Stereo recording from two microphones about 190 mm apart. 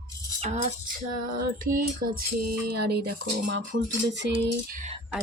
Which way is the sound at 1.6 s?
50° right (ahead or behind).